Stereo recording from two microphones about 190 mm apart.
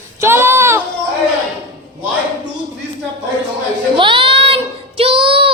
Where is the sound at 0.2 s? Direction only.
15° right (ahead or behind).